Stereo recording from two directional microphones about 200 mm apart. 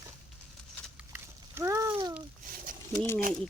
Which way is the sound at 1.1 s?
10° right (ahead or behind).